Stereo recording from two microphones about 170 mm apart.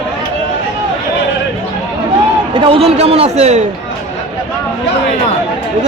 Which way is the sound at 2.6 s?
30° right (ahead or behind).